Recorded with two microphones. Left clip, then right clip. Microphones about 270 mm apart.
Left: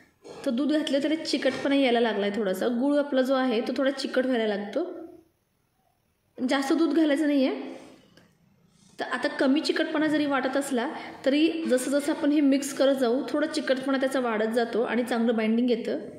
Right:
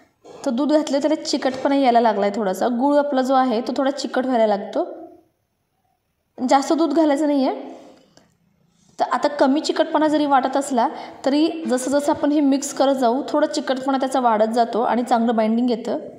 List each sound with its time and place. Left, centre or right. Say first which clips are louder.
0.4 s a woman's voice: right 7 dB; centre
6.3 s a woman's voice: right 8 dB; centre
8.9 s a woman's voice: right 9 dB; centre